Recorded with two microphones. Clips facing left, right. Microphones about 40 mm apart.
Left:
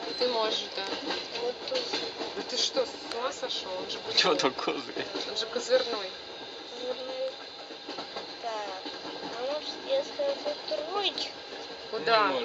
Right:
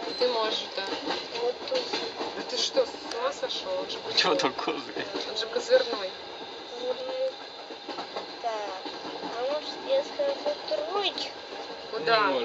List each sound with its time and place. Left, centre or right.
0.0 s speech: centre
8.5 s train: centre
9.2 s a sound: centre
11.9 s speech: centre